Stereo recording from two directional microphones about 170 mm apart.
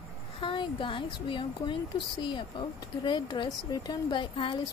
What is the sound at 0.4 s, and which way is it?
Speech, 30° left (ahead or behind).